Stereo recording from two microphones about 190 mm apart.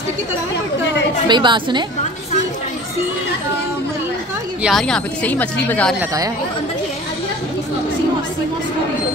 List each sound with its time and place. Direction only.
1.2 s a woman's voice: 25° right (ahead or behind)
4.6 s a woman's voice: centre (ahead or behind)